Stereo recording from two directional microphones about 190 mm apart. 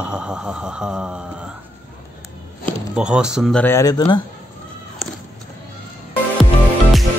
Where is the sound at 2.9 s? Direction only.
5° right (ahead or behind); by 4.2 s 20° left (ahead or behind).